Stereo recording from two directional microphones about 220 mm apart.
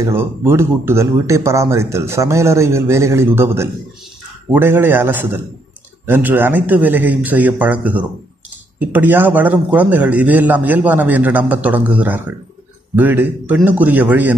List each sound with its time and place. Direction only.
0.0 s speech: 10° right (ahead or behind)